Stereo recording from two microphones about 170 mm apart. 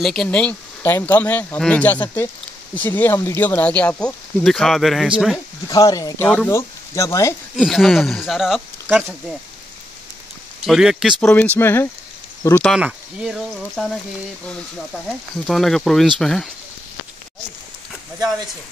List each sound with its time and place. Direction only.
0.0 s speech: 5° left (ahead or behind)
5.7 s speech: 20° left (ahead or behind)
7.5 s speech: centre (ahead or behind)
10.7 s speech: 5° right (ahead or behind)
11.1 s speech: 10° left (ahead or behind)
12.7 s speech: 5° right (ahead or behind)
15.0 s speech: centre (ahead or behind)